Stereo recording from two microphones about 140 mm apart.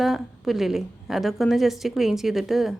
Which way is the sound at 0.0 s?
Centre (ahead or behind).